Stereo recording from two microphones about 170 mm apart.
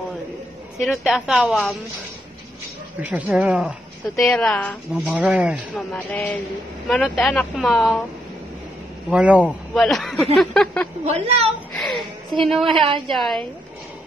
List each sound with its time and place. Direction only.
0.8 s speech: centre (ahead or behind)
3.0 s speech: 10° right (ahead or behind); by 5.1 s 5° left (ahead or behind)
5.1 s speech: 5° right (ahead or behind)
5.8 s a man's voice: 5° left (ahead or behind)
9.1 s speech: 10° right (ahead or behind)
9.5 s speech: 5° left (ahead or behind)
11.1 s a woman's voice: 40° right (ahead or behind)
11.8 s a woman's voice: centre (ahead or behind)
12.7 s a woman's voice: 30° right (ahead or behind)
13.1 s speech: centre (ahead or behind)